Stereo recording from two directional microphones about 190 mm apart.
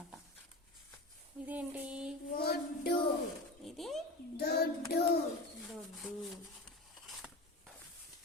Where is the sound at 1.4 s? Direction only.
10° right (ahead or behind).